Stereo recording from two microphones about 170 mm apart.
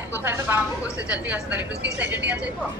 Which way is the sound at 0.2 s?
10° right (ahead or behind).